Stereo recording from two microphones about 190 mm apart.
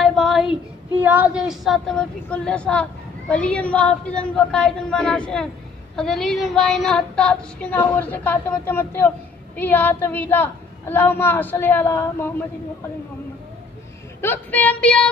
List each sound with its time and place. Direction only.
0.0 s a sound: centre (ahead or behind)
1.0 s a woman's voice: 5° right (ahead or behind); by 12.3 s 10° left (ahead or behind)
14.2 s a woman's voice: 10° left (ahead or behind)